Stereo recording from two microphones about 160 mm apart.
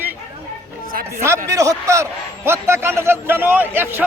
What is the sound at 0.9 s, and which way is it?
Speech, 60° right (ahead or behind).